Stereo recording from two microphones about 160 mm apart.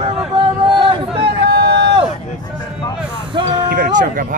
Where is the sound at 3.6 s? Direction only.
70° right (ahead or behind).